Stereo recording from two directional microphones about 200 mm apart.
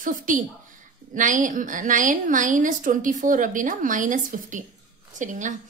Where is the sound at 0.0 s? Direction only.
40° right (ahead or behind).